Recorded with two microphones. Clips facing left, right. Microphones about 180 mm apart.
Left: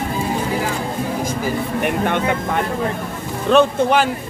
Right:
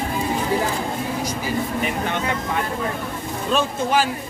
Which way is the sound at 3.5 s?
60° left (ahead or behind).